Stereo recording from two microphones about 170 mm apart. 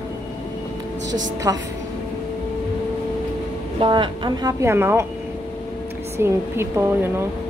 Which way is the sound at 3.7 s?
30° right (ahead or behind).